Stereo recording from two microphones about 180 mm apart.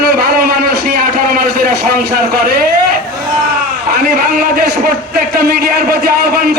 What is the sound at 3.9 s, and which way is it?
A man's voice, 60° right (ahead or behind).